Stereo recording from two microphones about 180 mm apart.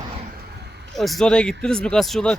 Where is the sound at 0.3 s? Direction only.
65° right (ahead or behind).